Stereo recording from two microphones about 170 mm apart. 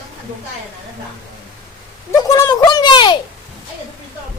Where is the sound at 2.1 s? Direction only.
20° left (ahead or behind).